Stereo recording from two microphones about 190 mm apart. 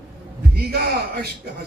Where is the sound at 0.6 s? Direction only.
55° right (ahead or behind).